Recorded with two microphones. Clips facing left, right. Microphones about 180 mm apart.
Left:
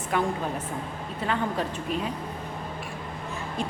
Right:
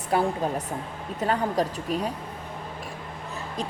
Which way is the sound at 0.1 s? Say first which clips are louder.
Right 3 dB; 35° right (ahead or behind).